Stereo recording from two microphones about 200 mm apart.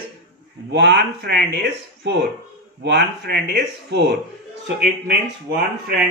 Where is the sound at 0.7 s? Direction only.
55° right (ahead or behind).